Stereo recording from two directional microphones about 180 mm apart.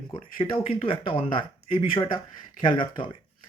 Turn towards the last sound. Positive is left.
turn(degrees=30)  # may be behind; listen again after turning